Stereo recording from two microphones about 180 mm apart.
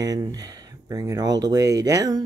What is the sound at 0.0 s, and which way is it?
Speech, 20° right (ahead or behind).